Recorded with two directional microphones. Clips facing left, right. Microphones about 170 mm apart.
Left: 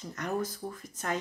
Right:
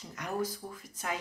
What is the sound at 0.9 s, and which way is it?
Speech, 10° right (ahead or behind).